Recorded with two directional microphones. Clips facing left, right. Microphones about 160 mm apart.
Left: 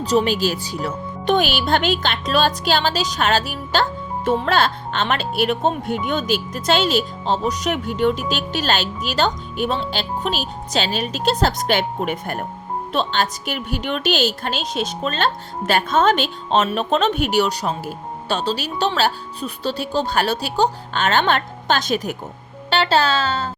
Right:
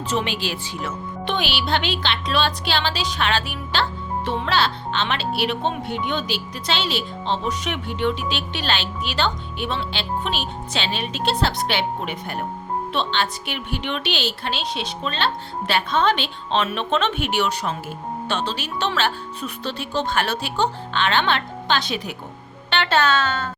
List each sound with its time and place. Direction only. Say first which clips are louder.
0.0 s a woman's voice: left 7 dB; 35° left (ahead or behind)
22.7 s a woman's voice: left 2 dB; 35° left (ahead or behind)